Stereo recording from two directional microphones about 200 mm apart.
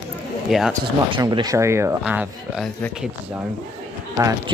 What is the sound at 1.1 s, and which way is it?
Speech, 20° right (ahead or behind).